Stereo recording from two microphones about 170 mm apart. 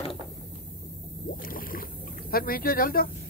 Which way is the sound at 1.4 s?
55° left (ahead or behind).